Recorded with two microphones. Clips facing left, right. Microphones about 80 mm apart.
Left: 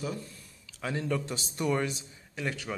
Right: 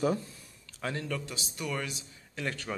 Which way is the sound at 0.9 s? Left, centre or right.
Centre.